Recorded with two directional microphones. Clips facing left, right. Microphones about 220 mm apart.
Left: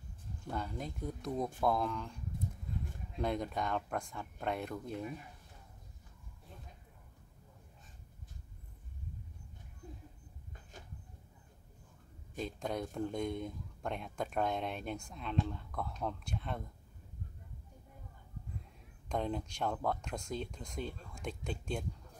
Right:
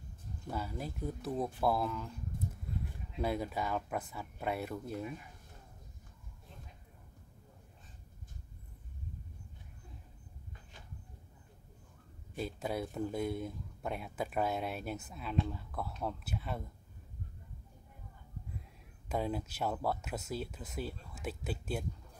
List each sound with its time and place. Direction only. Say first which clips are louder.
0.5 s speech: even; 5° right (ahead or behind)
3.2 s speech: even; 5° right (ahead or behind)
12.4 s speech: right 1 dB; 5° right (ahead or behind)
19.0 s speech: right 1 dB; 5° right (ahead or behind)